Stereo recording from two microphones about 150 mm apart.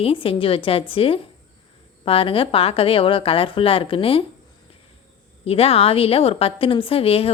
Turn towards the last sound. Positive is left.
turn(degrees=40)  # may be behind; listen again after turning